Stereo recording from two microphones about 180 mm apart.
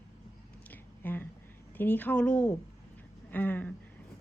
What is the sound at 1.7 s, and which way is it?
Speech, 10° left (ahead or behind).